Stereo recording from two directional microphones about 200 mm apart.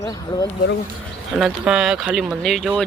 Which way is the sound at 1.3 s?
Centre (ahead or behind).